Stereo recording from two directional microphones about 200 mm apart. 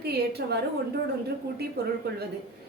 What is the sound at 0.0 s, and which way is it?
Speech, 55° right (ahead or behind).